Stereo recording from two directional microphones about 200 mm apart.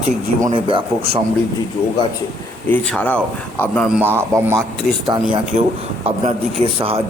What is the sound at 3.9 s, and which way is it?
Speech, 10° right (ahead or behind).